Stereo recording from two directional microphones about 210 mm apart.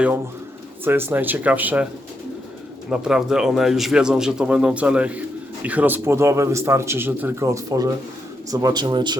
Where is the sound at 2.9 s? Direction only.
5° right (ahead or behind).